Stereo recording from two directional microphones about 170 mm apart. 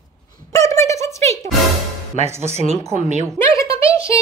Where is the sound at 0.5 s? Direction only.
20° left (ahead or behind).